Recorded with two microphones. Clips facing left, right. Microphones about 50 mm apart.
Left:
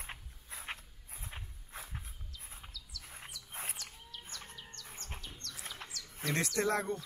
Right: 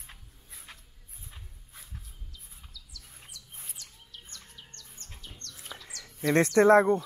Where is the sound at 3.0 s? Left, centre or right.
Left.